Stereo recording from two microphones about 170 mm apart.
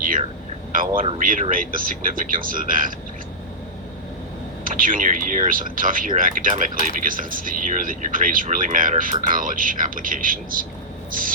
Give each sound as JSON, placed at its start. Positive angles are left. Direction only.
{"t": 0.0, "sound": "a sound", "side_deg": -55}
{"t": 0.7, "sound": "speech", "side_deg": -55}
{"t": 4.6, "sound": "speech", "side_deg": -55}